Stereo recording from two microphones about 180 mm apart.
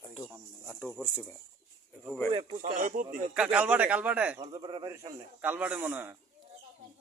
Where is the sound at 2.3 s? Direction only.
40° right (ahead or behind).